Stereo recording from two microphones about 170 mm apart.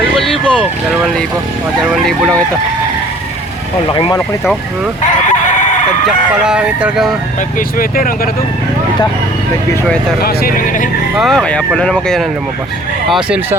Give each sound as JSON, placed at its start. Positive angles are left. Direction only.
{"t": 0.2, "sound": "vehicle", "side_deg": 0}
{"t": 1.9, "sound": "speech", "side_deg": 0}
{"t": 3.9, "sound": "speech", "side_deg": 25}
{"t": 5.0, "sound": "crowing", "side_deg": 45}
{"t": 6.4, "sound": "speech", "side_deg": -5}
{"t": 7.8, "sound": "speech", "side_deg": 60}
{"t": 10.2, "sound": "speech", "side_deg": 55}
{"t": 11.2, "sound": "speech", "side_deg": 0}